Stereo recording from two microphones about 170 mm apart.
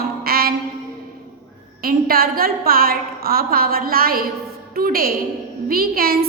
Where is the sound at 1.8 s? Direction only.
60° right (ahead or behind).